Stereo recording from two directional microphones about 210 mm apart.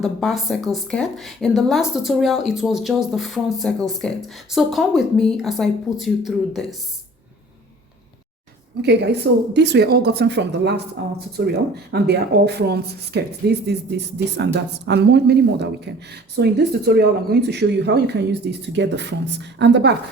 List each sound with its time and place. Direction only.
0.0 s speech: centre (ahead or behind)
8.8 s speech: 55° right (ahead or behind)